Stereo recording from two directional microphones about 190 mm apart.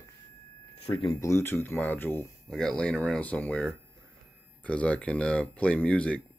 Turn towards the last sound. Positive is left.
turn(degrees=5)  # may be behind; listen again after turning